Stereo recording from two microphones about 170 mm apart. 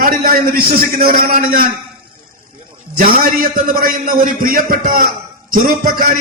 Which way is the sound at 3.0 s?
60° right (ahead or behind).